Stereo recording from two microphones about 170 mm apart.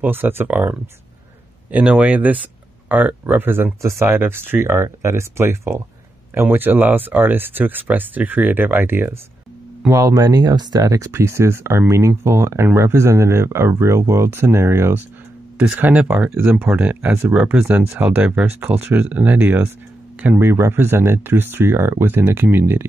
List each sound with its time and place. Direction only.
0.0 s speech: 10° right (ahead or behind)